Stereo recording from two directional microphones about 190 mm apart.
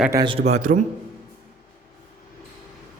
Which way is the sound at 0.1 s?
20° right (ahead or behind).